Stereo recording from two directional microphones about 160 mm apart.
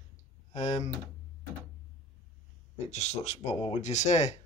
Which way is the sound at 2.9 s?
40° left (ahead or behind).